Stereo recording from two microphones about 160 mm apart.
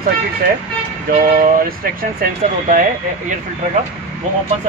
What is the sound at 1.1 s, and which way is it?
Speech, 60° right (ahead or behind).